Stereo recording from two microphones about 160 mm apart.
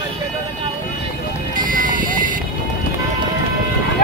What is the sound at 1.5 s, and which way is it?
Music, 55° right (ahead or behind).